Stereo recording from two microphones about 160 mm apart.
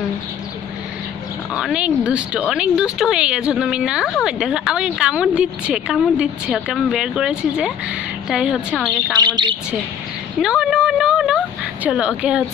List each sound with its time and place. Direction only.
1.5 s speech: 5° right (ahead or behind)
9.2 s speech: 30° right (ahead or behind)
10.4 s speech: 5° right (ahead or behind)